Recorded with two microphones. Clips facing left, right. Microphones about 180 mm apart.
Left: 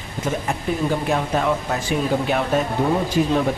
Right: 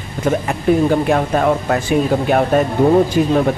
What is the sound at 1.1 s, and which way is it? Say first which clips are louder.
Speech: right 6 dB; 55° right (ahead or behind).